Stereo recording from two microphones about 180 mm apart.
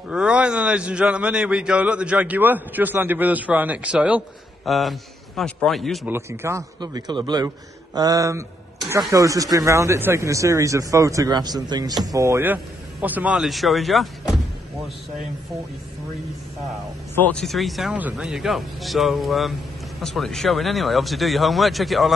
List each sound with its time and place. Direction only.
0.1 s a man's voice: 5° right (ahead or behind)
6.0 s a man's voice: 15° right (ahead or behind)
6.8 s a man's voice: 25° right (ahead or behind); by 14.4 s centre (ahead or behind)
17.1 s speech: 5° left (ahead or behind)